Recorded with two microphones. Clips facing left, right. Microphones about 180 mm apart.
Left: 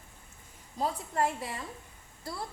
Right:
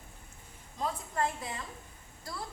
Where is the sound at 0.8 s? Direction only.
30° left (ahead or behind).